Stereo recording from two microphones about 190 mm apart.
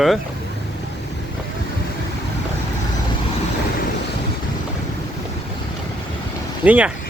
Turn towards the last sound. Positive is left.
turn(degrees=-10)  # may be behind; listen again after turning